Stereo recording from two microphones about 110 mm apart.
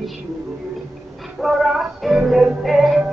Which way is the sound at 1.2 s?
Centre (ahead or behind).